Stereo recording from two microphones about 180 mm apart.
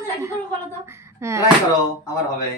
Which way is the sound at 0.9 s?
15° right (ahead or behind).